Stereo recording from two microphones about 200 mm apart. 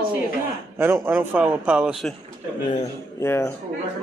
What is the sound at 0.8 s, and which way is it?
A man's voice, 10° right (ahead or behind).